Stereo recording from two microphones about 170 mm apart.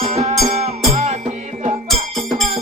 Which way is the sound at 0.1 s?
40° right (ahead or behind).